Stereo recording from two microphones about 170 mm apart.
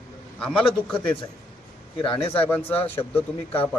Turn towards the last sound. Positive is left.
turn(degrees=10)  # may be behind; listen again after turning